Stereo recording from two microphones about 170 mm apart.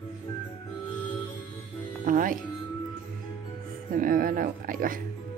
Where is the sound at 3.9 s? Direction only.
55° right (ahead or behind).